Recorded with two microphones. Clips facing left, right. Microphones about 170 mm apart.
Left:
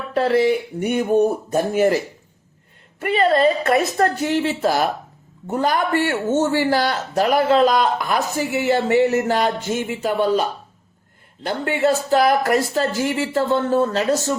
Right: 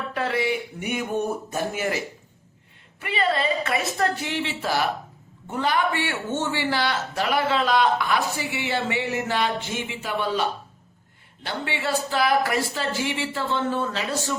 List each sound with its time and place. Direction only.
0.1 s speech: 35° left (ahead or behind)
3.0 s a man's voice: 45° left (ahead or behind)
11.4 s a man's voice: 45° left (ahead or behind)